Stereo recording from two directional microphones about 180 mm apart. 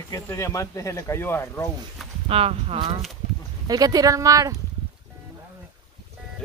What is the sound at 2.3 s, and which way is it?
Speech, 35° right (ahead or behind).